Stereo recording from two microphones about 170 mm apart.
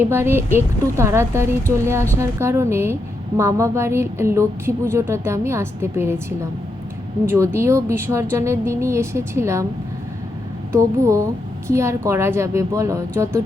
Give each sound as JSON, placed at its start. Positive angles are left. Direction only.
{"t": 0.0, "sound": "a woman's voice", "side_deg": -15}
{"t": 10.7, "sound": "a woman's voice", "side_deg": -20}